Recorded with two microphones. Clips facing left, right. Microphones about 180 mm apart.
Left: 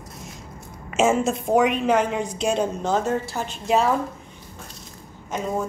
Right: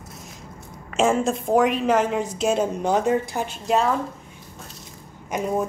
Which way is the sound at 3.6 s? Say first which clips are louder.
Left 1 dB; centre (ahead or behind).